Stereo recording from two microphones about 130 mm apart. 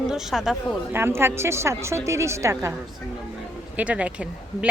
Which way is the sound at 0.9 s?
20° right (ahead or behind).